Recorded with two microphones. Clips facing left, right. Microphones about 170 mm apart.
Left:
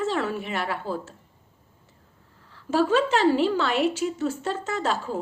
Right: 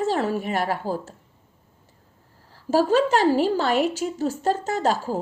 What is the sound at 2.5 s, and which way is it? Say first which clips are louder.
A woman's voice: right 2 dB; 40° right (ahead or behind).